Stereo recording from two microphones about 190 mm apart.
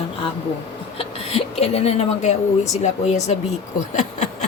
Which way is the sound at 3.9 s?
35° left (ahead or behind).